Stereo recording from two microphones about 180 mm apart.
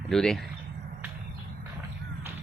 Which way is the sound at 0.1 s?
5° left (ahead or behind).